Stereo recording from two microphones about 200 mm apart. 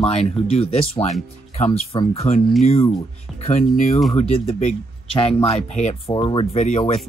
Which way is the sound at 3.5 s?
35° left (ahead or behind).